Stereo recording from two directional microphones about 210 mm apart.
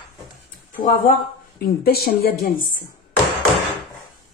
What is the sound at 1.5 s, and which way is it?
Speech, 45° left (ahead or behind).